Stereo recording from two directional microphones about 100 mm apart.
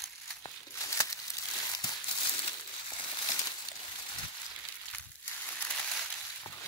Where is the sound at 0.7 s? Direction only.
30° left (ahead or behind).